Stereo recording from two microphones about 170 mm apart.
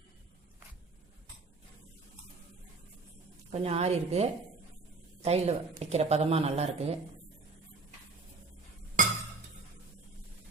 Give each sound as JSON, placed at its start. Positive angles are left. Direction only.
{"t": 3.5, "sound": "speech", "side_deg": -35}